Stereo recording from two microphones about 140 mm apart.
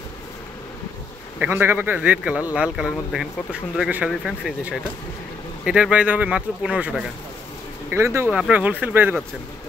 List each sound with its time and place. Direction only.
1.4 s speech: 15° right (ahead or behind)
7.9 s speech: 20° right (ahead or behind)
8.3 s speech: 10° right (ahead or behind)